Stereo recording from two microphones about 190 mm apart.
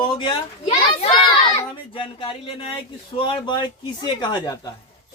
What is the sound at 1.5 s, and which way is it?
Speech, 30° left (ahead or behind).